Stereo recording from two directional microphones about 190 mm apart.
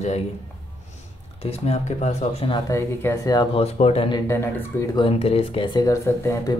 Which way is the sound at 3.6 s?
35° left (ahead or behind).